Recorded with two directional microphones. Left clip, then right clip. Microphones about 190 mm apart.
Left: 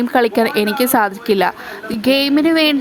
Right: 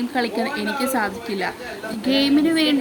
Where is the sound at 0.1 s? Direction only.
45° left (ahead or behind).